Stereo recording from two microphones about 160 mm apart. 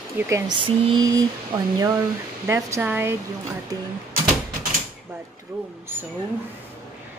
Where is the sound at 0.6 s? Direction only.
25° right (ahead or behind).